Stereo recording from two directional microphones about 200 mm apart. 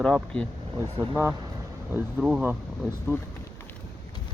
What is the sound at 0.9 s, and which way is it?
Speech, 15° right (ahead or behind).